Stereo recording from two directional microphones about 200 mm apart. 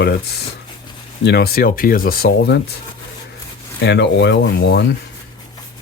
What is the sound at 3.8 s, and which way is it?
Speech, 60° left (ahead or behind).